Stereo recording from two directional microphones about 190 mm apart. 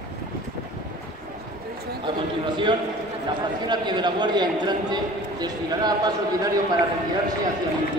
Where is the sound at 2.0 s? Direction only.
25° right (ahead or behind).